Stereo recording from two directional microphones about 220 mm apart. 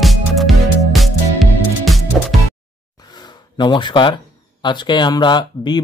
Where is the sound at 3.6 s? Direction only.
20° left (ahead or behind).